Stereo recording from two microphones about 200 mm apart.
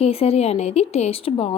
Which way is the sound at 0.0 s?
30° left (ahead or behind).